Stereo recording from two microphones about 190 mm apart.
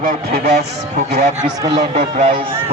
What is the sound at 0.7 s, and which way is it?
Speech, 35° right (ahead or behind).